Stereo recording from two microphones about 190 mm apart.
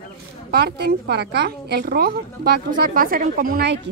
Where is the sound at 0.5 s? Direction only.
55° right (ahead or behind).